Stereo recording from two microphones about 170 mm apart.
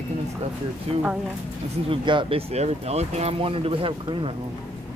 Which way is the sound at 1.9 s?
30° right (ahead or behind).